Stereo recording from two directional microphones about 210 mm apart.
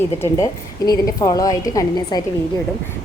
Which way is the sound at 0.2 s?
15° left (ahead or behind).